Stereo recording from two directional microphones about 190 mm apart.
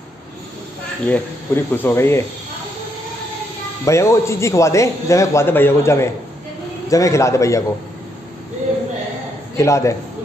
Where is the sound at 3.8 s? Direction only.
15° left (ahead or behind).